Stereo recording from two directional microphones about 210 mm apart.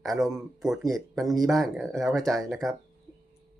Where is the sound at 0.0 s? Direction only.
Centre (ahead or behind).